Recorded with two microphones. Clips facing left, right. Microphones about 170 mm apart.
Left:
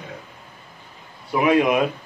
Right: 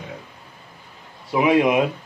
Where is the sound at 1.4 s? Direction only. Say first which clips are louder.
Right 1 dB; 20° right (ahead or behind).